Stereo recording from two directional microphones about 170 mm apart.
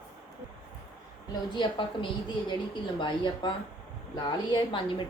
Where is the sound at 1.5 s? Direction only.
30° left (ahead or behind).